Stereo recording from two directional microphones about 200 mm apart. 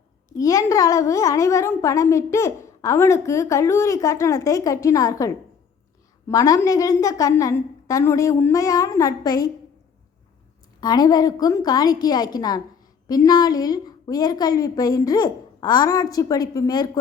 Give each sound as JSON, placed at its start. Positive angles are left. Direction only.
{"t": 0.3, "sound": "a woman's voice", "side_deg": 15}
{"t": 10.8, "sound": "a woman's voice", "side_deg": 20}